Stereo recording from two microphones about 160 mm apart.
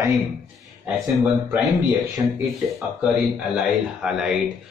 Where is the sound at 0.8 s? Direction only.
5° right (ahead or behind).